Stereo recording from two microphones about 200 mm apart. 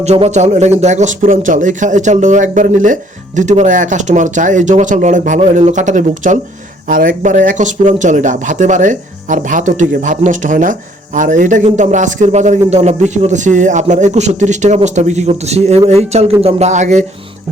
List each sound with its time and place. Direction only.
0.0 s speech: 35° right (ahead or behind)